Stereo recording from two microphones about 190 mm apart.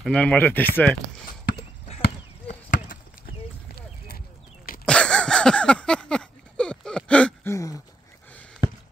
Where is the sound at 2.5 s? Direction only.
45° left (ahead or behind).